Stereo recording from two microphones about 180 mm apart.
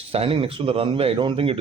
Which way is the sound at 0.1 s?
30° right (ahead or behind).